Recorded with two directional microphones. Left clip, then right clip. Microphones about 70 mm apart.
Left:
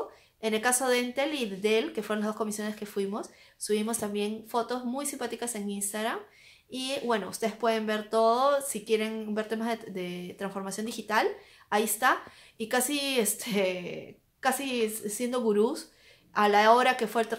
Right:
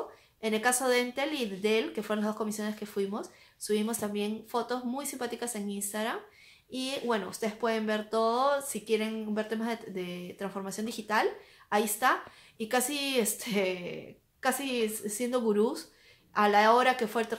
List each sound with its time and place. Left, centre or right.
0.4 s a woman's voice: left